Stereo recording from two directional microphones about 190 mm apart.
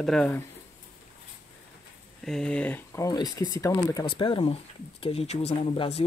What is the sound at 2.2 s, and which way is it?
Speech, 5° left (ahead or behind).